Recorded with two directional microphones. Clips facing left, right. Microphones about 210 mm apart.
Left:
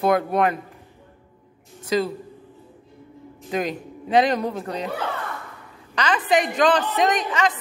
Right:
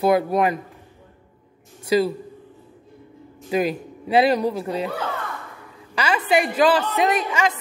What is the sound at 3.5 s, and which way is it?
A man's voice, 5° right (ahead or behind).